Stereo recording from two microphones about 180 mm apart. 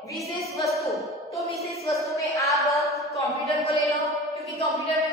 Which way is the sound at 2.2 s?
15° left (ahead or behind).